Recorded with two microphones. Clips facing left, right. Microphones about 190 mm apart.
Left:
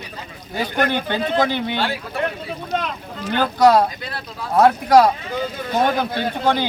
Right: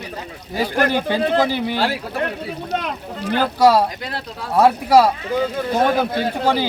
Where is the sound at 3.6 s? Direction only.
5° right (ahead or behind).